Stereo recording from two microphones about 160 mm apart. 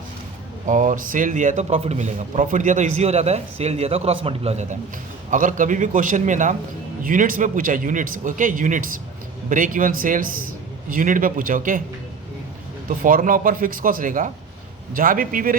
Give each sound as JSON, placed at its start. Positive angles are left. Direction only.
{"t": 0.7, "sound": "speech", "side_deg": -50}
{"t": 5.3, "sound": "a man's voice", "side_deg": -55}
{"t": 13.0, "sound": "a man's voice", "side_deg": -60}